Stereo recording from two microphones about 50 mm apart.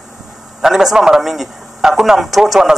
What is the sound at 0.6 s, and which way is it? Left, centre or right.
A man's voice, centre.